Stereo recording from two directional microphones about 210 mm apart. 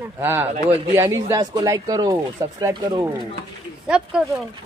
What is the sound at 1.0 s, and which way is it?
A woman's voice, 15° right (ahead or behind).